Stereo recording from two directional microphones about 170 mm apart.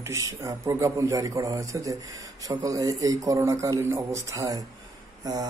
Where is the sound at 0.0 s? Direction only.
20° right (ahead or behind).